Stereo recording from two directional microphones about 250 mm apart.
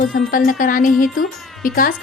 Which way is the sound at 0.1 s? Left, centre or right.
Left.